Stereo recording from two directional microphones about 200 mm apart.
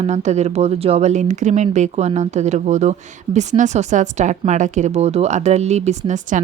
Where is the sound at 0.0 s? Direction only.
35° right (ahead or behind).